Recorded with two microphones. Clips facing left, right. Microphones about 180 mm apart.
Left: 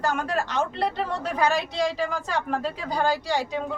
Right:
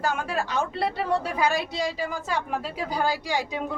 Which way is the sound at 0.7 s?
5° right (ahead or behind).